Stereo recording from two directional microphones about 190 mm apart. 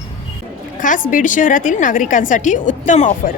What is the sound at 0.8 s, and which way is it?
A woman's voice, 45° left (ahead or behind).